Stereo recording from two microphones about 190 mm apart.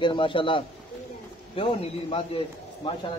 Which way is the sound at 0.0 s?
25° left (ahead or behind).